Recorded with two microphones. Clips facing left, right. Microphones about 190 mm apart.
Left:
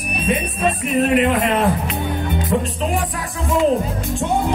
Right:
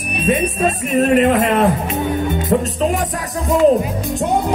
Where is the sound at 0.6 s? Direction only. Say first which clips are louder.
Even; 40° right (ahead or behind).